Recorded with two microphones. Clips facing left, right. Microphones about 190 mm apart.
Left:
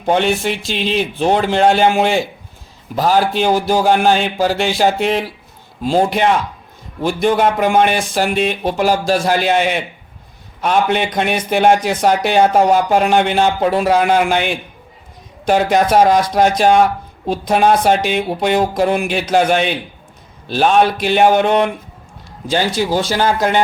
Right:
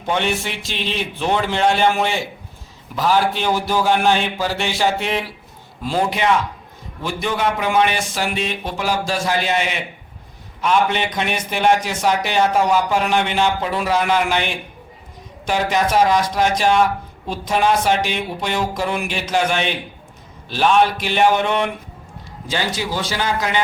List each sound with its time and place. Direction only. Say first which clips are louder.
0.0 s a man's voice: left 6 dB; 35° left (ahead or behind)
7.0 s speech: left 7 dB; 50° left (ahead or behind)
15.4 s a man's voice: left 6 dB; 50° left (ahead or behind)